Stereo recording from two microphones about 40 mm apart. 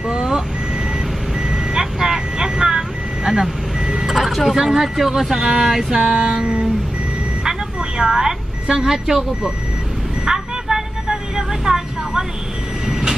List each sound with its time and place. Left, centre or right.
0.1 s vehicle: centre
1.5 s vehicle: centre
4.1 s speech: centre
5.6 s a sound: centre
8.0 s speech: centre
10.2 s vehicle: centre